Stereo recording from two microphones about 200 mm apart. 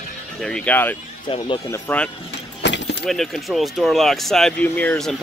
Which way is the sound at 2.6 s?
60° left (ahead or behind).